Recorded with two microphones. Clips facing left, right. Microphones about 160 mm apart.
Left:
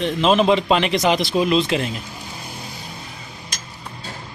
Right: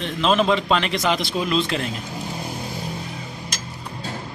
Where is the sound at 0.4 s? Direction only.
15° left (ahead or behind).